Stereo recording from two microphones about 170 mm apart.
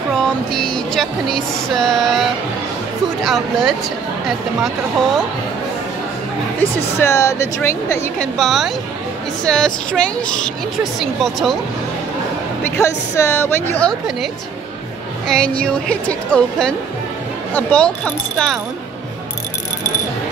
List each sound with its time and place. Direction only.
0.2 s music: 5° left (ahead or behind)
1.7 s a woman's voice: centre (ahead or behind)
3.3 s a woman's voice: centre (ahead or behind)
7.0 s a woman's voice: 15° left (ahead or behind)
8.4 s a woman's voice: centre (ahead or behind)
12.6 s a woman's voice: 15° left (ahead or behind)